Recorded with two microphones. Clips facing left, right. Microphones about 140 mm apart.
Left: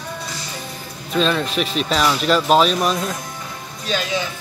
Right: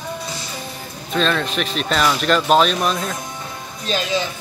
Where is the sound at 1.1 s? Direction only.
5° left (ahead or behind).